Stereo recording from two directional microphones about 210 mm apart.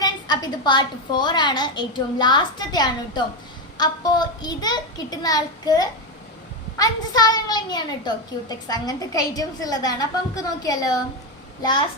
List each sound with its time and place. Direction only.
0.0 s a woman's voice: 20° left (ahead or behind)